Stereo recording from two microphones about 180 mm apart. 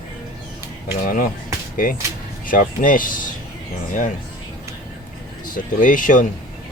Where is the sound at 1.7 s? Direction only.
50° left (ahead or behind).